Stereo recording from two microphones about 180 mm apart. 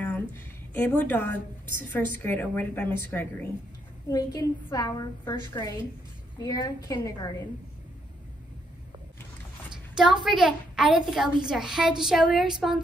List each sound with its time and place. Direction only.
0.0 s a sound: 10° left (ahead or behind)
1.9 s a woman's voice: 10° left (ahead or behind)
4.1 s a woman's voice: 20° left (ahead or behind)
9.9 s a woman's voice: 5° right (ahead or behind)